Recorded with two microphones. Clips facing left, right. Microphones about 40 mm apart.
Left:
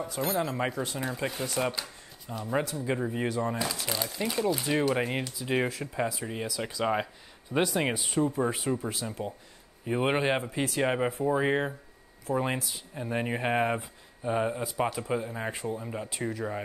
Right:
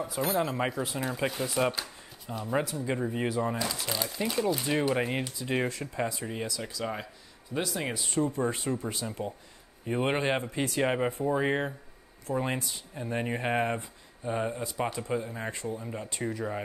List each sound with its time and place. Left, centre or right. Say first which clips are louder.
0.4 s speech: even; centre
6.6 s speech: left 6 dB; left
7.5 s speech: left 5 dB; centre
8.1 s speech: right 2 dB; centre